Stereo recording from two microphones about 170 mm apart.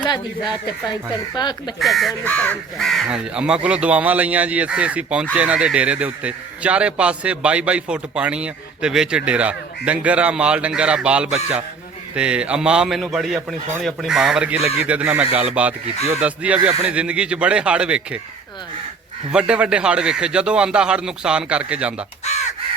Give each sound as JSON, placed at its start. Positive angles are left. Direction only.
{"t": 0.0, "sound": "speech", "side_deg": 25}
{"t": 1.8, "sound": "a man's voice", "side_deg": 0}
{"t": 19.3, "sound": "a man's voice", "side_deg": -5}
{"t": 22.2, "sound": "crow", "side_deg": 40}